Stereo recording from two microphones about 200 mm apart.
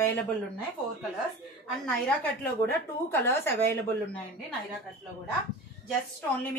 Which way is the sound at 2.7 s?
10° left (ahead or behind).